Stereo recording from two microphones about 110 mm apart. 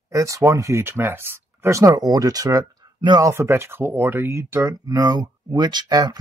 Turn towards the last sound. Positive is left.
turn(degrees=-40)  # may be behind; listen again after turning